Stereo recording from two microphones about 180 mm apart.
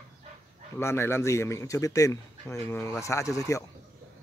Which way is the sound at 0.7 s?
15° left (ahead or behind).